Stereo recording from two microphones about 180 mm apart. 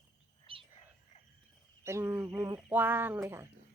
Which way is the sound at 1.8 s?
15° right (ahead or behind).